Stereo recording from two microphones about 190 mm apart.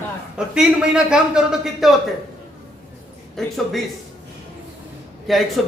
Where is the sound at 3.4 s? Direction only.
Centre (ahead or behind).